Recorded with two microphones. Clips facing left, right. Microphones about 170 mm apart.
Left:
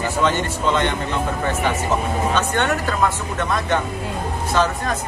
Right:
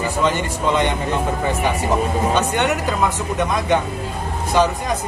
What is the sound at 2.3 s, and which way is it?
Speech, 15° right (ahead or behind).